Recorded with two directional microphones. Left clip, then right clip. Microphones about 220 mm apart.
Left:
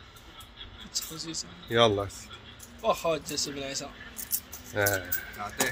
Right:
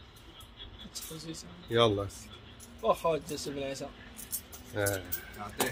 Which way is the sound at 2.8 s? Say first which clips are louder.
Left 1 dB; 45° right (ahead or behind).